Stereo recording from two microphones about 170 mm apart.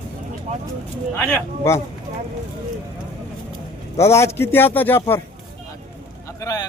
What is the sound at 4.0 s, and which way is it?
A man's voice, 15° left (ahead or behind).